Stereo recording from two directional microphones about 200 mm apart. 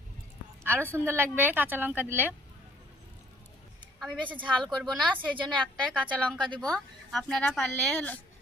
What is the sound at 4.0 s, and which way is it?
Speech, centre (ahead or behind).